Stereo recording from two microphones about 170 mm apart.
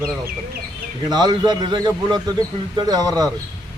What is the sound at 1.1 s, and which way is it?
A man's voice, 25° right (ahead or behind).